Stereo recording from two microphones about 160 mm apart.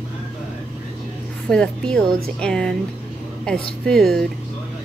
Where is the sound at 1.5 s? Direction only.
5° left (ahead or behind).